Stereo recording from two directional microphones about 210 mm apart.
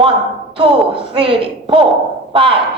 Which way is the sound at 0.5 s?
25° right (ahead or behind).